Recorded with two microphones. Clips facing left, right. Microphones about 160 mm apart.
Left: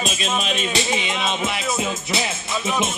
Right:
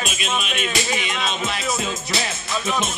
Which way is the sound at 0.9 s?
20° left (ahead or behind).